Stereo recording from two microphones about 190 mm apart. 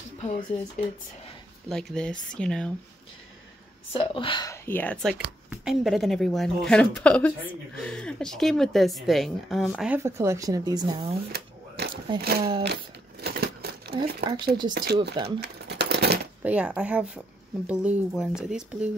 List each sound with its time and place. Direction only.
0.2 s speech: 35° left (ahead or behind)
1.7 s a woman's voice: centre (ahead or behind)
3.9 s speech: 30° left (ahead or behind)
4.6 s a woman's voice: 10° left (ahead or behind); by 11.1 s 25° right (ahead or behind)
11.3 s a sound: 55° right (ahead or behind)
12.2 s speech: 55° right (ahead or behind)
13.2 s a sound: 55° right (ahead or behind)
14.2 s speech: 25° right (ahead or behind)
14.7 s speech: 60° right (ahead or behind)
15.2 s coin: 60° right (ahead or behind)
16.4 s a woman's voice: 5° right (ahead or behind)